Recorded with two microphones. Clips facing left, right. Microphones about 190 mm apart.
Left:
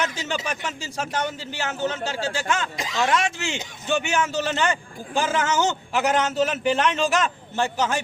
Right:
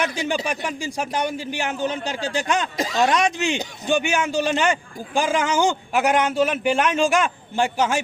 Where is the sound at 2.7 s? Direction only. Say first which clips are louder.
Right 6 dB; 40° right (ahead or behind).